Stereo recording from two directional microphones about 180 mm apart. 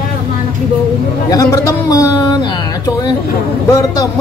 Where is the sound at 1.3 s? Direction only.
20° left (ahead or behind).